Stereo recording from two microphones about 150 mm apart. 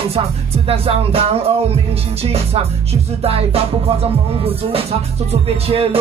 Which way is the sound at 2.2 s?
40° right (ahead or behind).